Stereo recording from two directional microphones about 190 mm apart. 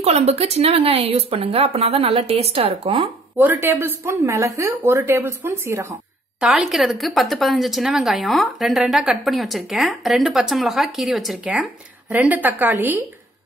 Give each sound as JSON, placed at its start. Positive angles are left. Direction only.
{"t": 0.0, "sound": "speech", "side_deg": -35}
{"t": 3.3, "sound": "speech", "side_deg": -10}